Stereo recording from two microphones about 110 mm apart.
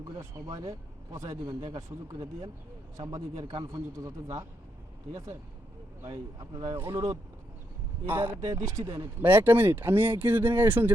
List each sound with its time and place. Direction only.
0.4 s a man's voice: 35° right (ahead or behind)
3.7 s a man's voice: 30° right (ahead or behind)
6.7 s speech: 20° right (ahead or behind)
8.0 s speech: 15° right (ahead or behind)
8.5 s a man's voice: 30° right (ahead or behind)
9.2 s speech: 15° right (ahead or behind)